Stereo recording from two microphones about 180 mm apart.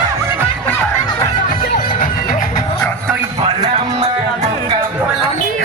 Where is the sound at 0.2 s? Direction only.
15° right (ahead or behind).